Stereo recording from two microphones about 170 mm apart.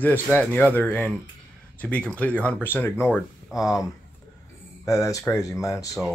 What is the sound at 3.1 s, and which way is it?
Speech, centre (ahead or behind).